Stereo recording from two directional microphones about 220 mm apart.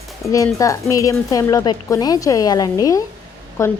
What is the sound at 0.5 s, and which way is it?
A woman's voice, 15° left (ahead or behind).